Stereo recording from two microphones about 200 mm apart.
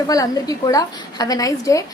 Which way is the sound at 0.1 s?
15° left (ahead or behind).